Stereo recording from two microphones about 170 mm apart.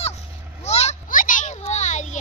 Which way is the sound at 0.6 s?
40° left (ahead or behind).